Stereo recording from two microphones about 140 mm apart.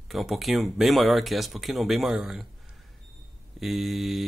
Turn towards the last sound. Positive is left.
turn(degrees=0)  # may be behind; listen again after turning